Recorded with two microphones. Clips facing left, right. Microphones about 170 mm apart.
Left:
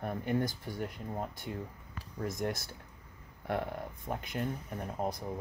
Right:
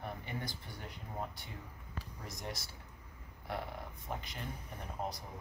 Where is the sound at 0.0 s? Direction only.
50° left (ahead or behind).